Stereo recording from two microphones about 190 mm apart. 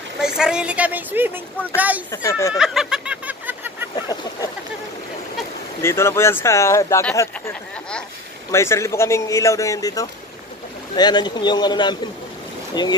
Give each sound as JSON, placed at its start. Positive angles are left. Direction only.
{"t": 0.2, "sound": "a woman's voice", "side_deg": -5}
{"t": 2.0, "sound": "speech", "side_deg": 15}
{"t": 2.5, "sound": "a sound", "side_deg": 0}
{"t": 3.9, "sound": "speech", "side_deg": 20}
{"t": 5.8, "sound": "speech", "side_deg": 15}